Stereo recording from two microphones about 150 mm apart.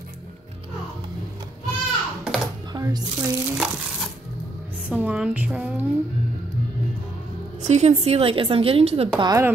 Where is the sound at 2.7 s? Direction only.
25° right (ahead or behind).